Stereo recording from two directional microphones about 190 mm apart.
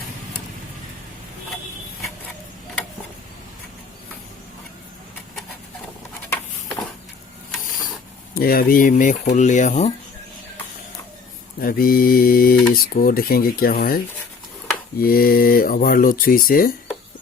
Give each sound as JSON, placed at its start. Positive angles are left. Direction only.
{"t": 8.4, "sound": "speech", "side_deg": 50}
{"t": 11.6, "sound": "speech", "side_deg": 50}